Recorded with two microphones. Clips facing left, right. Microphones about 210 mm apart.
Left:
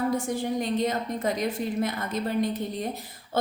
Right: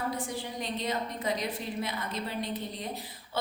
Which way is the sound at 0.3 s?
50° left (ahead or behind).